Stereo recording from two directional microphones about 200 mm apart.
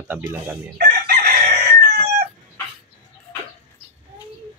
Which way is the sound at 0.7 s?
50° right (ahead or behind).